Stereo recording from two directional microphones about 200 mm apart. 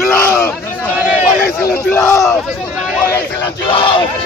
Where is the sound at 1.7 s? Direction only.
10° left (ahead or behind).